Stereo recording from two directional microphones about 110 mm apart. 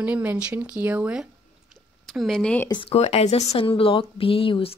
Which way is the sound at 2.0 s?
Centre (ahead or behind).